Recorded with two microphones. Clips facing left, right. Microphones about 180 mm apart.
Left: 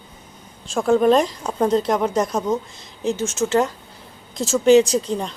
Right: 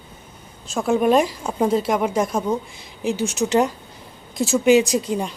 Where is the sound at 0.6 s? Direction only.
5° right (ahead or behind).